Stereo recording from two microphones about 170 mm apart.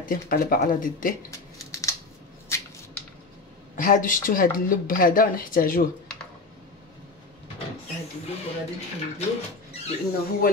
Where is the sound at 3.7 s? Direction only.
55° left (ahead or behind).